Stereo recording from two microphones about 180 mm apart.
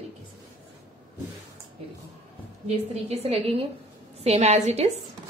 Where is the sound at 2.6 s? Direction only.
35° right (ahead or behind).